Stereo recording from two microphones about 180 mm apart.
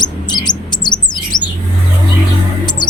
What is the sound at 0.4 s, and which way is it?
Bird, 25° left (ahead or behind).